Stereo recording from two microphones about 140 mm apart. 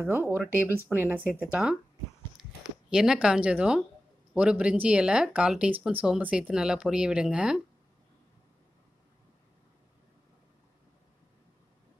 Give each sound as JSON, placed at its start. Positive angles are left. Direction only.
{"t": 0.0, "sound": "speech", "side_deg": -15}
{"t": 2.9, "sound": "speech", "side_deg": -5}